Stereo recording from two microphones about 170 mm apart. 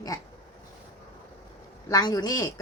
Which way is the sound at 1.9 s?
20° left (ahead or behind).